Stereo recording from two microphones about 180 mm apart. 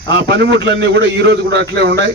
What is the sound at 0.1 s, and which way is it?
A man's voice, 75° right (ahead or behind).